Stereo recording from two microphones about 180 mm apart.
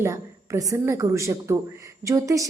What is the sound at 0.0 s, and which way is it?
A woman's voice, 15° right (ahead or behind).